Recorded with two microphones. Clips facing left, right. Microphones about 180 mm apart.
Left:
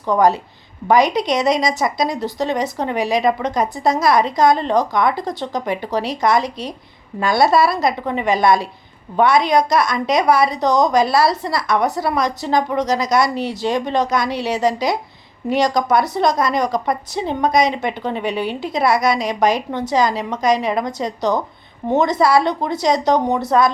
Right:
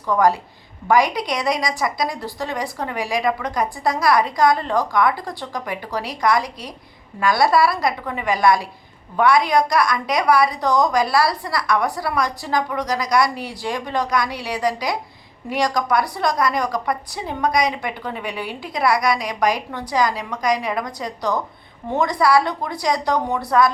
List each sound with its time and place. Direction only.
0.0 s a woman's voice: 20° left (ahead or behind)